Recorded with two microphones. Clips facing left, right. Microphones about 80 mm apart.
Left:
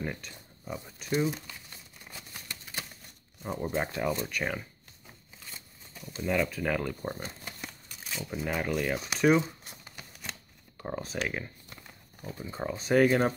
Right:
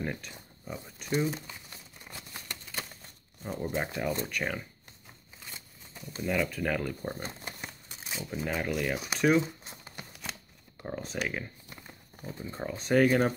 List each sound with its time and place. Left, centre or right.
0.0 s speech: centre
3.4 s speech: centre
6.2 s speech: centre
8.3 s speech: centre
9.7 s a sound: right
10.8 s speech: centre
11.7 s horse: centre
12.4 s speech: centre